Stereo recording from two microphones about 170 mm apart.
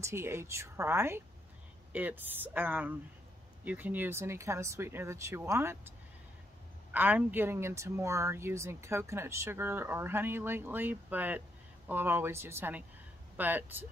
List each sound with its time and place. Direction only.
0.0 s speech: 15° right (ahead or behind)